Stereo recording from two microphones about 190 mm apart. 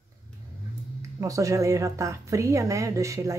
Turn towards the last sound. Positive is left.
turn(degrees=-15)  # may be behind; listen again after turning